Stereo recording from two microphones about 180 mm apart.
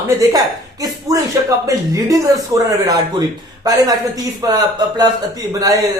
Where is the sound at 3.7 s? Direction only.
20° right (ahead or behind).